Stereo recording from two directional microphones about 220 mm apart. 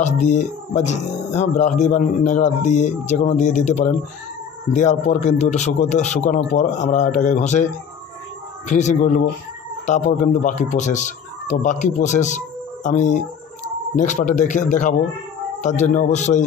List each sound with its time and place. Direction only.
0.0 s speech: 30° left (ahead or behind)
8.6 s speech: 35° left (ahead or behind)